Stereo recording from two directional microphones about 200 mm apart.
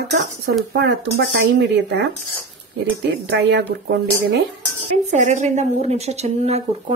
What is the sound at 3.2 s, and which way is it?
Speech, 60° right (ahead or behind).